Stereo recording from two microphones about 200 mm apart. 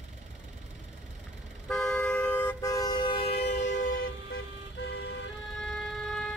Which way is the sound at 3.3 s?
60° left (ahead or behind).